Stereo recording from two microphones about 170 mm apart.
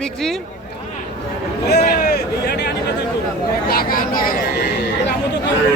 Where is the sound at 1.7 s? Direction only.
70° left (ahead or behind).